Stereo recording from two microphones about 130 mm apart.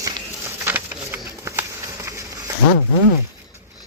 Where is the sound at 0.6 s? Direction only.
15° right (ahead or behind).